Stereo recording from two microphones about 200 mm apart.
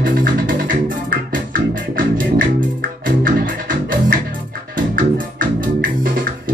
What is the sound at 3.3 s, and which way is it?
Music, 45° right (ahead or behind).